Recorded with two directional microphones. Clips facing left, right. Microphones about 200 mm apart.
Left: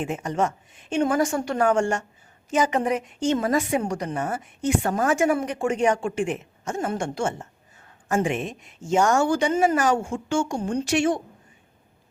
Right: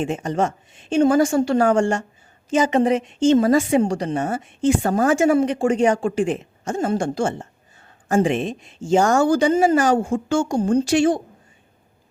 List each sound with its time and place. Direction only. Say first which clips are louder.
0.0 s a woman's voice: right 3 dB; 30° right (ahead or behind)